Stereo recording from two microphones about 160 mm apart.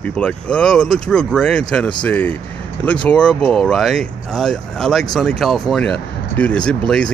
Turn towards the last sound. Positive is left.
turn(degrees=5)  # may be behind; listen again after turning